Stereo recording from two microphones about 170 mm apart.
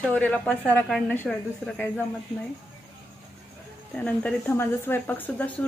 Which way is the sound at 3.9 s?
5° left (ahead or behind).